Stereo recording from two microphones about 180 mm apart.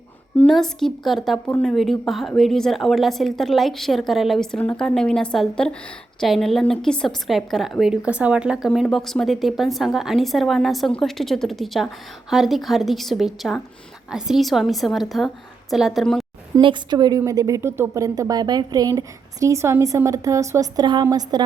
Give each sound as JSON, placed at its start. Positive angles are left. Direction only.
{"t": 0.3, "sound": "a woman's voice", "side_deg": 5}
{"t": 16.6, "sound": "a woman's voice", "side_deg": -25}